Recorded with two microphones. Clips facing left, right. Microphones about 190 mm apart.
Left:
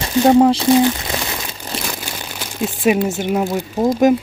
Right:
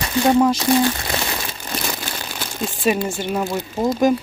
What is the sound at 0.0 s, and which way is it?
Speech, 25° left (ahead or behind).